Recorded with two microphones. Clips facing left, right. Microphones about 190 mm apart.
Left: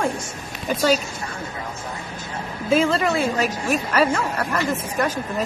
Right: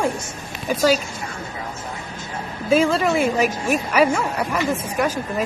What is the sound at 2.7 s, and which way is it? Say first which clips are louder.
Speech: right 2 dB; 5° right (ahead or behind).